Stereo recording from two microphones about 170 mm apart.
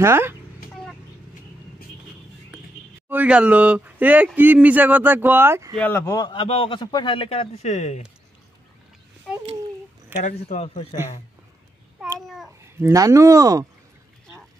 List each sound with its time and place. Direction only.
0.0 s speech: 15° right (ahead or behind)
3.1 s speech: 10° right (ahead or behind)
5.8 s speech: 15° left (ahead or behind)
6.3 s speech: 35° left (ahead or behind)
10.1 s speech: 45° left (ahead or behind)
12.7 s speech: 15° right (ahead or behind)